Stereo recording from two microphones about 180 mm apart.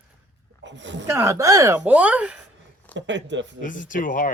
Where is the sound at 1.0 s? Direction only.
15° right (ahead or behind).